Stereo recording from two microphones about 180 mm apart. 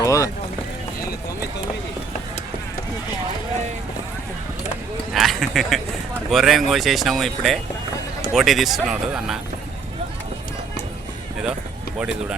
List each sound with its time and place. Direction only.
0.0 s speech: 20° left (ahead or behind)
5.1 s speech: centre (ahead or behind)
11.9 s speech: 5° right (ahead or behind)